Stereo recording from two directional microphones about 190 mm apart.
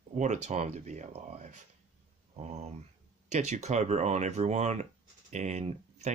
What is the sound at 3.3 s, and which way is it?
Speech, 35° right (ahead or behind).